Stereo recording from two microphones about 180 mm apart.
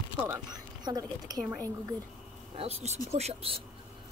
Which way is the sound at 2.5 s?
35° right (ahead or behind).